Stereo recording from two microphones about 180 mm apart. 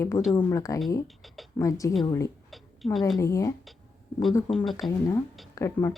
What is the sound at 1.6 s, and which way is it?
Speech, 20° left (ahead or behind).